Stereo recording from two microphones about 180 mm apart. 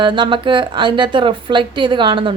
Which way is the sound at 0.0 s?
25° right (ahead or behind).